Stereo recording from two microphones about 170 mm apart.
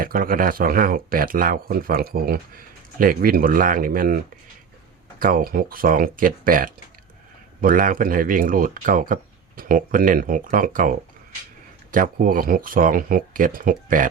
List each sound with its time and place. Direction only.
0.0 s speech: 55° right (ahead or behind)
5.2 s speech: 60° right (ahead or behind)